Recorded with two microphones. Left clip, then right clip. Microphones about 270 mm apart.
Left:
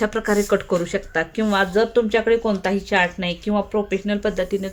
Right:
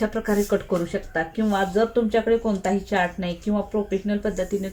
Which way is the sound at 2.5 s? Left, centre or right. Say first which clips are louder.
Left 3 dB; centre.